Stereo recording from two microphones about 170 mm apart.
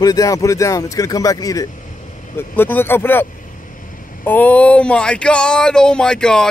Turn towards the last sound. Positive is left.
turn(degrees=5)  # may be behind; listen again after turning